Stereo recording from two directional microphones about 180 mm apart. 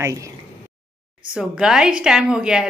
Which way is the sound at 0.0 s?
15° right (ahead or behind).